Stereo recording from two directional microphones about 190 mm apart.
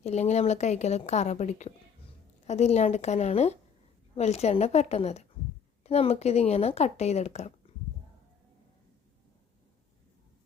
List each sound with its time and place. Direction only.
0.0 s speech: 35° left (ahead or behind)